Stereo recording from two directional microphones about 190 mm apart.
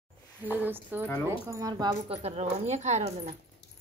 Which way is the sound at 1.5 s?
20° right (ahead or behind).